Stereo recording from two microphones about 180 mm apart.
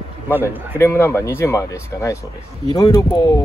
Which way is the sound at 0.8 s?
15° left (ahead or behind).